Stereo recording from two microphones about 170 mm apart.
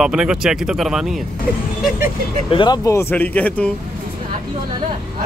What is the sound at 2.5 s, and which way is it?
Speech, 30° left (ahead or behind).